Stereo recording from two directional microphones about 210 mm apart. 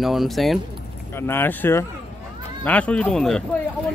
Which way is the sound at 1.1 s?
10° left (ahead or behind).